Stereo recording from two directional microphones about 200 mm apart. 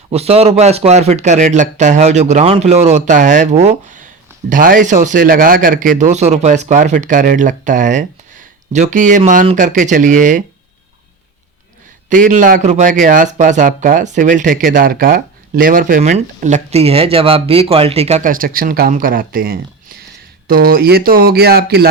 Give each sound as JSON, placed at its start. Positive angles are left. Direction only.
{"t": 0.1, "sound": "speech", "side_deg": -30}
{"t": 12.0, "sound": "speech", "side_deg": -40}